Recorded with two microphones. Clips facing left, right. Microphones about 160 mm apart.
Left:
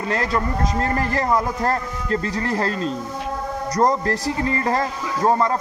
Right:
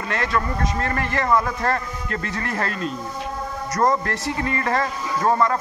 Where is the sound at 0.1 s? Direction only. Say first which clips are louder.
Left 1 dB; 35° left (ahead or behind).